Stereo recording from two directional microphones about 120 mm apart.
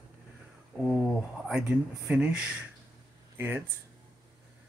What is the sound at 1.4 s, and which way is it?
Speech, 10° right (ahead or behind).